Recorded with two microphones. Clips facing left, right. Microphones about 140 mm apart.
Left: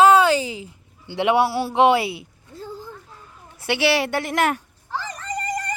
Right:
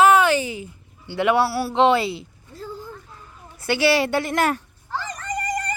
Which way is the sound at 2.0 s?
70° left (ahead or behind).